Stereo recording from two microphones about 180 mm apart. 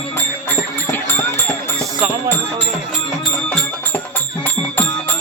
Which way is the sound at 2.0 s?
5° right (ahead or behind).